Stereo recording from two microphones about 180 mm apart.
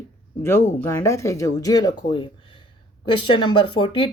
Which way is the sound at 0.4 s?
10° left (ahead or behind).